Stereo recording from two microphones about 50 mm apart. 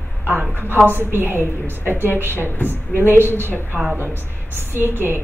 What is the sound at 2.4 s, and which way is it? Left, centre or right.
Speech, left.